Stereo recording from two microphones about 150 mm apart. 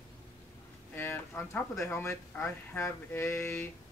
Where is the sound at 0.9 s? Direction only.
15° left (ahead or behind).